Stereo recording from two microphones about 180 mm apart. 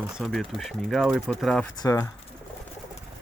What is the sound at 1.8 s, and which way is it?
Speech, 15° left (ahead or behind).